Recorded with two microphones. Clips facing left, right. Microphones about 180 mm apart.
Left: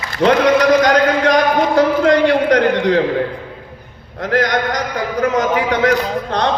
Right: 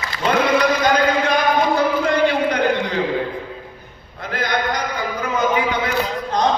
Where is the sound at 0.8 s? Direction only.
90° left.